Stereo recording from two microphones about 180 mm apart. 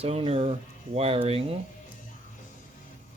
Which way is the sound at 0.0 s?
35° right (ahead or behind).